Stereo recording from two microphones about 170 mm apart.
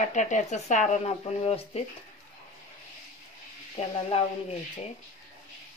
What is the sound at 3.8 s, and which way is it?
Speech, 45° left (ahead or behind).